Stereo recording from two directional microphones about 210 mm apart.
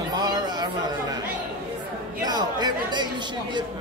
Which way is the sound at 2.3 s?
20° right (ahead or behind).